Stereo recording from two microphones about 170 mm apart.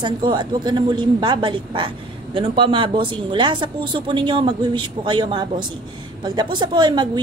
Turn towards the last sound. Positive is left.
turn(degrees=-25)  # may be behind; listen again after turning